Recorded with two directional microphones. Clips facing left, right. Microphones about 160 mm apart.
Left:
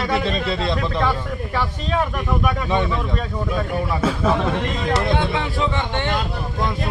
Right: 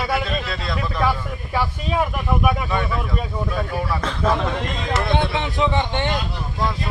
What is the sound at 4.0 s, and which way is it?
Speech, 10° left (ahead or behind).